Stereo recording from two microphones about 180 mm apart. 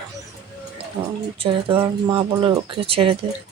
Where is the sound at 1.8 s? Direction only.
20° right (ahead or behind).